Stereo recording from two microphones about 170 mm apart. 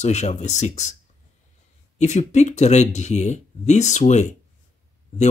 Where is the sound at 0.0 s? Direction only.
45° left (ahead or behind).